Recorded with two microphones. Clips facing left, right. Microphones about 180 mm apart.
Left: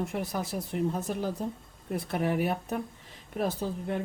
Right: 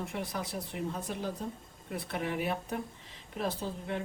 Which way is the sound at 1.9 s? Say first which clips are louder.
Left 6 dB; 45° left (ahead or behind).